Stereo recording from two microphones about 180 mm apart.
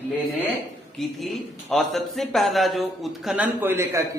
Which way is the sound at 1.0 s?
Centre (ahead or behind).